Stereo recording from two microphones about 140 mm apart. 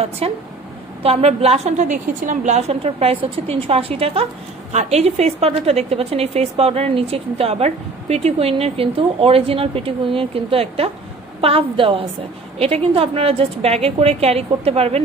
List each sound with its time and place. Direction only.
0.2 s a woman's voice: 45° right (ahead or behind)